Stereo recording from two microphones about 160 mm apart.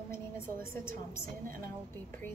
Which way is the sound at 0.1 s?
15° left (ahead or behind).